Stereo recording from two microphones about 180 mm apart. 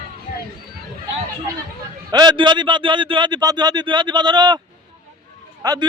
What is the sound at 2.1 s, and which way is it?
A man's voice, 25° right (ahead or behind).